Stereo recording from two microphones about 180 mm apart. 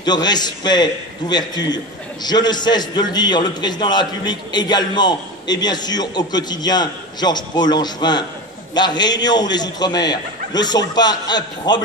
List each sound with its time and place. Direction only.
0.0 s a man's voice: 25° left (ahead or behind)